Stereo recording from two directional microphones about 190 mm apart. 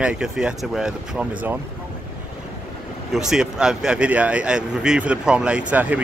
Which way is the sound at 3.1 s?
Centre (ahead or behind).